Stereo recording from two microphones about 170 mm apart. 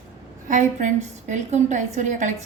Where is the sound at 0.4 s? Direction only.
50° right (ahead or behind).